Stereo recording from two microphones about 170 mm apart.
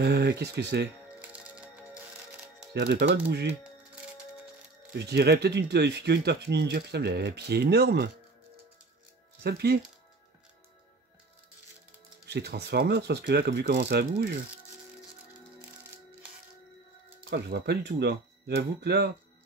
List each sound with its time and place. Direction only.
0.0 s speech: 75° right (ahead or behind)
1.2 s music: 5° right (ahead or behind)
2.7 s speech: 90° right
4.9 s speech: 80° right
9.4 s speech: 70° right (ahead or behind)
12.3 s speech: 75° right (ahead or behind)
17.3 s speech: 75° right (ahead or behind)